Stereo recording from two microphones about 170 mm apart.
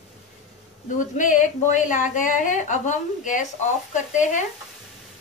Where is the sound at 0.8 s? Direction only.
50° left (ahead or behind).